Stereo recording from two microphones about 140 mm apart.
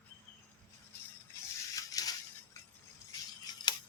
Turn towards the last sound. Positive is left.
turn(degrees=30)  # may be behind; listen again after turning